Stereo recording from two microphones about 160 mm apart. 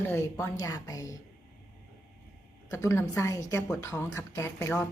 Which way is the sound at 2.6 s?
20° left (ahead or behind).